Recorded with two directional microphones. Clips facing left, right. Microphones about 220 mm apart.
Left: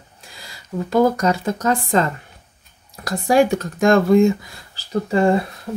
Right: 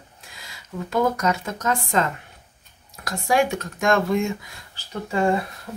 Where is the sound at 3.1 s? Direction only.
35° left (ahead or behind).